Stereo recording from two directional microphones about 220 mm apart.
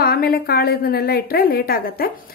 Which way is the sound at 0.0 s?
45° left (ahead or behind).